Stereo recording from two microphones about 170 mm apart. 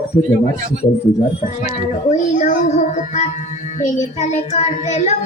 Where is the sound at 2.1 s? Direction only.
45° left (ahead or behind).